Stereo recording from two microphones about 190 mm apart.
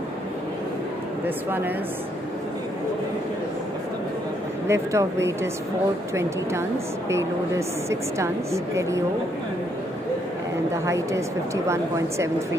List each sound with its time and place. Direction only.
1.2 s speech: 10° right (ahead or behind)
4.6 s speech: 15° right (ahead or behind)
7.1 s speech: 15° right (ahead or behind)
10.7 s speech: 15° right (ahead or behind)